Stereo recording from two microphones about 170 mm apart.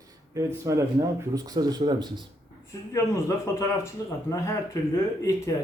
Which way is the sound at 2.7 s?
20° left (ahead or behind).